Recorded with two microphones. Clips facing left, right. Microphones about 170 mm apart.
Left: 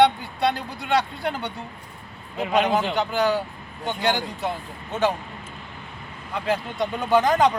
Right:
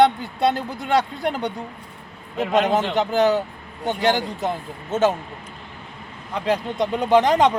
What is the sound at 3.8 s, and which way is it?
Speech, 40° right (ahead or behind).